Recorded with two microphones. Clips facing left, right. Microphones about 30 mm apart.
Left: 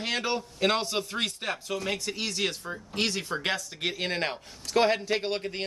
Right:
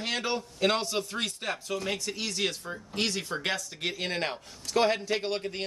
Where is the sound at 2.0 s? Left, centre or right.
Left.